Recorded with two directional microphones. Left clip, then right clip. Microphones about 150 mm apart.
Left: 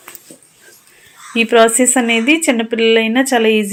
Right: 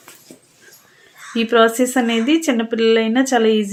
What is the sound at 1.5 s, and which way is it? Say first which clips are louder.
Speech: left 3 dB; 10° left (ahead or behind).